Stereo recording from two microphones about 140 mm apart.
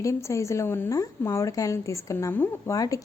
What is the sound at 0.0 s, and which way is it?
A woman's voice, 20° left (ahead or behind).